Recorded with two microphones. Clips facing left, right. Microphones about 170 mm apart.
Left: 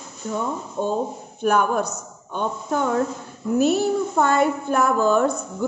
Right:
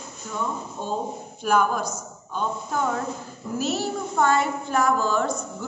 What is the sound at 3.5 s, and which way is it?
A woman's voice, 55° left (ahead or behind).